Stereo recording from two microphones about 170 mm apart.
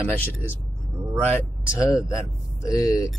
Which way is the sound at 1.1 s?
10° left (ahead or behind).